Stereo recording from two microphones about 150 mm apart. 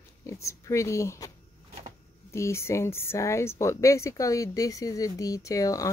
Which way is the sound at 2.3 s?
20° left (ahead or behind).